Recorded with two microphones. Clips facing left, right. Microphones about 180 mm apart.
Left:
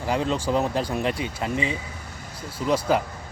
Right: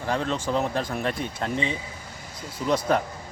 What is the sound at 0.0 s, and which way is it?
Speech, 10° left (ahead or behind).